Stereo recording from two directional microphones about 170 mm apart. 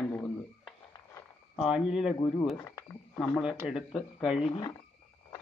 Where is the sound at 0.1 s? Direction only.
5° left (ahead or behind).